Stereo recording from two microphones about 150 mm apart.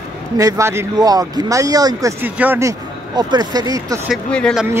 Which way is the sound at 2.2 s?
15° right (ahead or behind).